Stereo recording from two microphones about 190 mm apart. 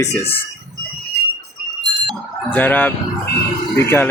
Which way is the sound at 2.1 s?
10° left (ahead or behind).